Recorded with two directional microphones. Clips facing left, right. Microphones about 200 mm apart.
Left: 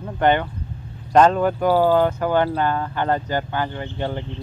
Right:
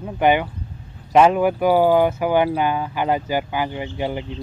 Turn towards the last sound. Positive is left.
turn(degrees=-10)  # may be behind; listen again after turning